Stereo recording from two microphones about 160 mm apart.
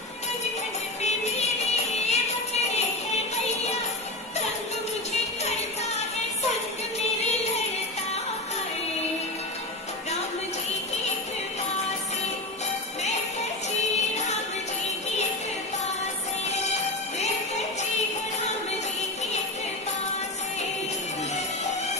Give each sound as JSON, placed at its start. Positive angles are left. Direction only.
{"t": 1.0, "sound": "music", "side_deg": 45}
{"t": 7.0, "sound": "music", "side_deg": 45}
{"t": 14.1, "sound": "music", "side_deg": 45}
{"t": 16.4, "sound": "music", "side_deg": 45}